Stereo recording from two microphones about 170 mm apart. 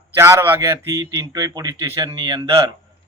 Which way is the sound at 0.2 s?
15° right (ahead or behind).